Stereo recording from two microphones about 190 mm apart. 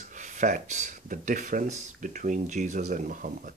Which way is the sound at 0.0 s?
40° right (ahead or behind).